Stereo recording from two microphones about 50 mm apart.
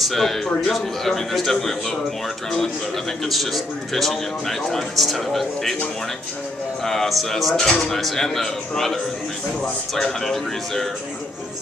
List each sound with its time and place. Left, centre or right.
0.0 s a man's voice: centre
3.3 s a man's voice: centre
6.8 s a man's voice: centre